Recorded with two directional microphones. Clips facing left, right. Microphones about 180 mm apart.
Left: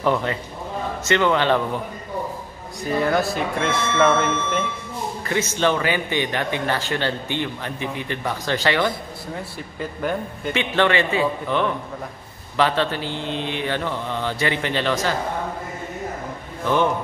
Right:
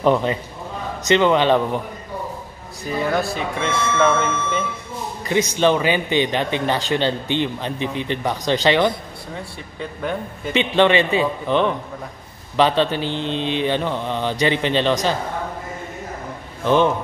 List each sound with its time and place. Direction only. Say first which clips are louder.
0.0 s a man's voice: right 4 dB; 20° right (ahead or behind)
3.0 s speech: even; centre (ahead or behind)
5.2 s a man's voice: right 4 dB; 15° right (ahead or behind)
9.3 s speech: left 1 dB; centre (ahead or behind)
10.5 s a man's voice: right 4 dB; 20° right (ahead or behind)
16.6 s a man's voice: right 4 dB; 20° right (ahead or behind)